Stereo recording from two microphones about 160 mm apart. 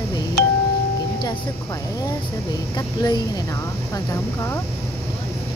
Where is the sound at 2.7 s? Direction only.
25° left (ahead or behind).